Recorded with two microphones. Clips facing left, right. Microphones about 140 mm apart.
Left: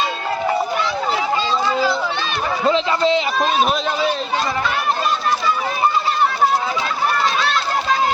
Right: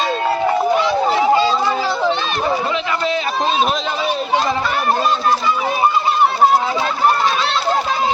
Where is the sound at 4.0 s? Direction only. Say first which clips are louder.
Right 2 dB; 10° right (ahead or behind).